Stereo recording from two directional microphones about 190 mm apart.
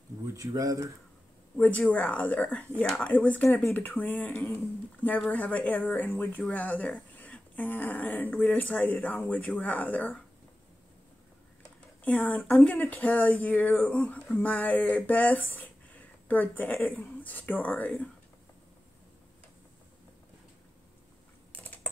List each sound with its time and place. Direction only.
0.3 s speech: 15° right (ahead or behind)
1.6 s speech: 10° left (ahead or behind)
12.0 s speech: 10° left (ahead or behind)